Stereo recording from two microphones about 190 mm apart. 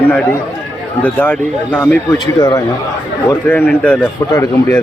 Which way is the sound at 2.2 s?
20° left (ahead or behind).